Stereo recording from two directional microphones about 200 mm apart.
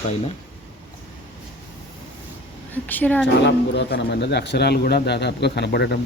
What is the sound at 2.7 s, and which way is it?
Speech, 10° left (ahead or behind).